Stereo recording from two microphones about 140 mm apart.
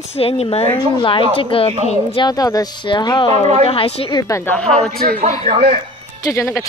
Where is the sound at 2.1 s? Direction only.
30° left (ahead or behind).